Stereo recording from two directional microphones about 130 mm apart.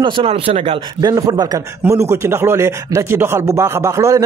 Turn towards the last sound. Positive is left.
turn(degrees=-25)  # may be behind; listen again after turning